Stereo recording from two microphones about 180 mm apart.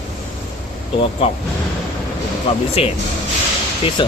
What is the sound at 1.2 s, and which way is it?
Speech, 35° left (ahead or behind).